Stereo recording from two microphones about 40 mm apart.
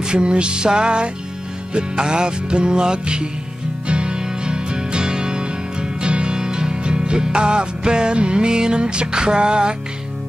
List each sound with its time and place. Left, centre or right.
0.0 s music: right